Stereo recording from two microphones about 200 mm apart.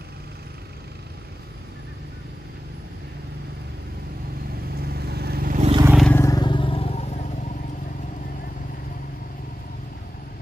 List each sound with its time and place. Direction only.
4.7 s vehicle: 50° right (ahead or behind)
5.6 s vehicle: 30° right (ahead or behind)
6.0 s vehicle: 15° left (ahead or behind); by 7.2 s 30° left (ahead or behind)